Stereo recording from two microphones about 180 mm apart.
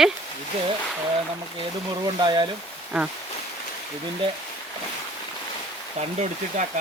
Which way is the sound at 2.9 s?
5° right (ahead or behind).